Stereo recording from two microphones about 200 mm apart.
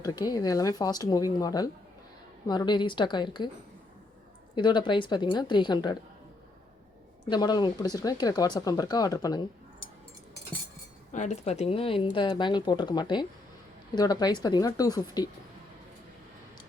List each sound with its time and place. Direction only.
0.0 s speech: 20° left (ahead or behind)
4.5 s speech: 20° left (ahead or behind)
7.3 s speech: 20° left (ahead or behind)
11.1 s speech: 35° left (ahead or behind); by 15.3 s 20° left (ahead or behind)